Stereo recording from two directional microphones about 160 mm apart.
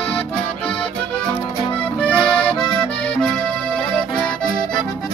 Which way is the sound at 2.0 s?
5° left (ahead or behind).